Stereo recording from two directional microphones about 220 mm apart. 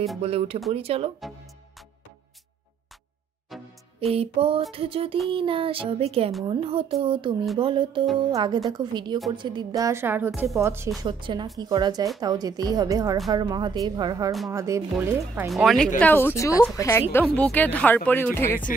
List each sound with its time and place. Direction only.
0.2 s speech: 25° right (ahead or behind)
3.4 s music: centre (ahead or behind)
4.1 s a woman's voice: 25° right (ahead or behind)
15.5 s speech: centre (ahead or behind)